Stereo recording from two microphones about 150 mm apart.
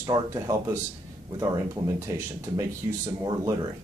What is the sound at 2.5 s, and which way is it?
Speech, 25° right (ahead or behind).